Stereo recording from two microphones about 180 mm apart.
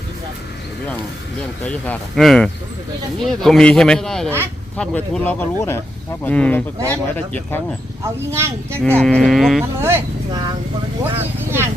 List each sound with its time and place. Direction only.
1.6 s speech: 5° left (ahead or behind)
8.0 s speech: 15° right (ahead or behind)
9.0 s speech: 5° left (ahead or behind)
9.8 s speech: 15° right (ahead or behind)